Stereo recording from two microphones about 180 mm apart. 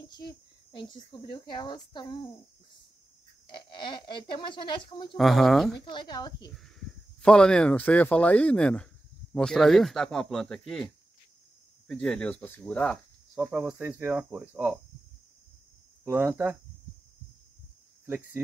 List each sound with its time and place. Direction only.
0.1 s speech: 25° left (ahead or behind)
3.4 s speech: 25° left (ahead or behind)
5.1 s speech: centre (ahead or behind)
5.9 s speech: 25° left (ahead or behind)
6.8 s speech: 5° left (ahead or behind)
11.9 s speech: 5° left (ahead or behind)
16.0 s speech: 15° right (ahead or behind)
18.0 s speech: 10° right (ahead or behind)